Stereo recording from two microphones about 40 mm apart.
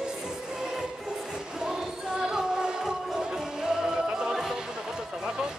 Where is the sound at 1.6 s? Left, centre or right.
Centre.